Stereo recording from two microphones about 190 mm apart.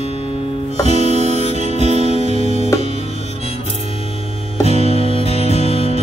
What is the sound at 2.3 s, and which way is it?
Music, 35° right (ahead or behind).